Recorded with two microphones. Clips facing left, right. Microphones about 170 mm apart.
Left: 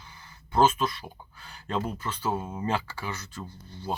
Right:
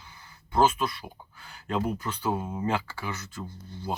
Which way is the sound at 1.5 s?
10° right (ahead or behind).